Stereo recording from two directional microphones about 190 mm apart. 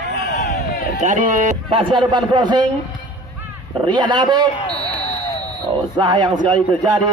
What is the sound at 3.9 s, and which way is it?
Speech, 25° right (ahead or behind).